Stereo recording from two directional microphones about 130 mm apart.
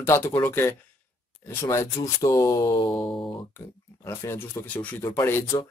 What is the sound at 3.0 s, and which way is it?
Speech, 40° left (ahead or behind).